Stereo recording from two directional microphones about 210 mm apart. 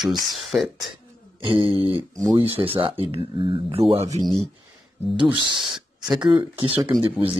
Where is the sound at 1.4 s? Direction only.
25° right (ahead or behind).